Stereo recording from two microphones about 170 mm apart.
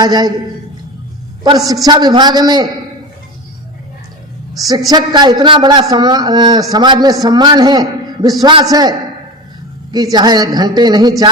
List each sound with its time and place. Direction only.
0.0 s a man's voice: 25° right (ahead or behind)
1.5 s a man's voice: 20° right (ahead or behind)
4.9 s a man's voice: 25° right (ahead or behind)